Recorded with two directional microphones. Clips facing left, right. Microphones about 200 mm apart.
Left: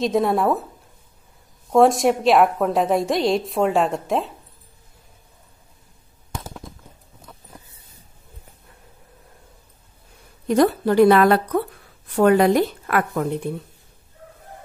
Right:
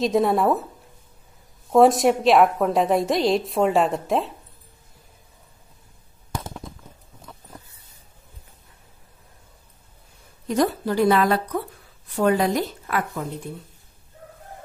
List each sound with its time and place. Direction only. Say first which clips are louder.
0.0 s a woman's voice: even; centre (ahead or behind)
1.7 s a woman's voice: even; centre (ahead or behind)
10.5 s a woman's voice: left 5 dB; 60° left (ahead or behind)